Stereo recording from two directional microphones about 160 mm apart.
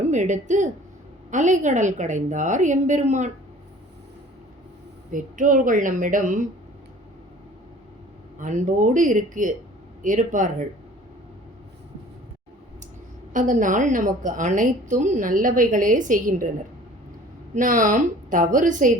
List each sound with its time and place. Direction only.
0.1 s a woman's voice: 50° right (ahead or behind)
5.1 s a woman's voice: 55° right (ahead or behind)
8.4 s a woman's voice: 50° right (ahead or behind)
13.3 s a woman's voice: 55° right (ahead or behind)
17.5 s a woman's voice: 55° right (ahead or behind)